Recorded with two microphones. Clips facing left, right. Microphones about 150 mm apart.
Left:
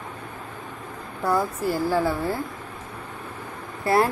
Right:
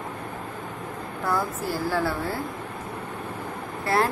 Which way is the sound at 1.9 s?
15° left (ahead or behind).